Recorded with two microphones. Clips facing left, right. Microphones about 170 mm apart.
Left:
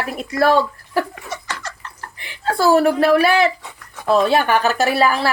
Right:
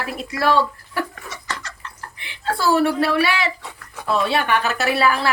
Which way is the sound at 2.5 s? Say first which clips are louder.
Left 4 dB; 45° left (ahead or behind).